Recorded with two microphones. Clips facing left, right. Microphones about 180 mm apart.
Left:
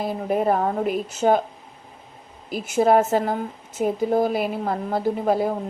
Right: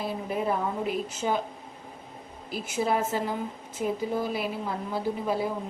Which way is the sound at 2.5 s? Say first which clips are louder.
Left 9 dB; 50° left (ahead or behind).